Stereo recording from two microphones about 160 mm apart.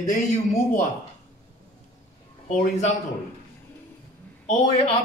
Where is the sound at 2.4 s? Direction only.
45° left (ahead or behind).